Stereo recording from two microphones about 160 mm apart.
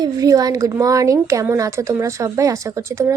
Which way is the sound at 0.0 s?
20° right (ahead or behind).